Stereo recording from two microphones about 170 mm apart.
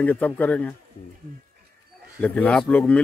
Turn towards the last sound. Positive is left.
turn(degrees=5)  # may be behind; listen again after turning